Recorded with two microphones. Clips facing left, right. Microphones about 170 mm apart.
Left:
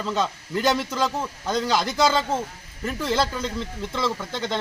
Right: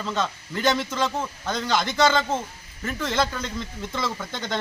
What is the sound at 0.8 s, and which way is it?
Speech, 35° left (ahead or behind).